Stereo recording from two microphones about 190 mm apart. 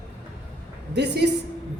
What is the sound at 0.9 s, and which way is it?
Speech, 60° right (ahead or behind).